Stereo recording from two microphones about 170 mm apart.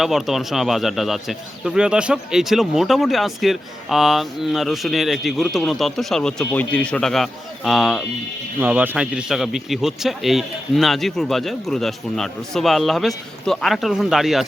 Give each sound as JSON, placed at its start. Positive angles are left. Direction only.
{"t": 0.0, "sound": "speech", "side_deg": 0}